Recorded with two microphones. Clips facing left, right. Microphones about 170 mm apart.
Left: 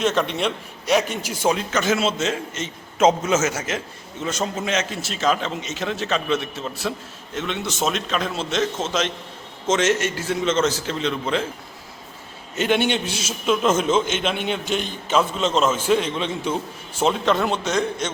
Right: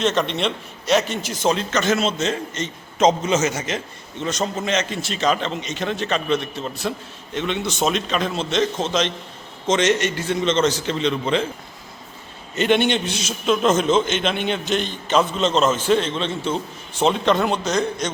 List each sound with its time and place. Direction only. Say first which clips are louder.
0.0 s a man's voice: right 1 dB; 5° left (ahead or behind)
12.5 s a man's voice: right 2 dB; 5° left (ahead or behind)